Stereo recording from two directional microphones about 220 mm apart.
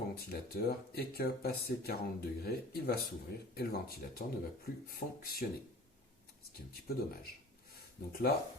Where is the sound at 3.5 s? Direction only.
45° left (ahead or behind).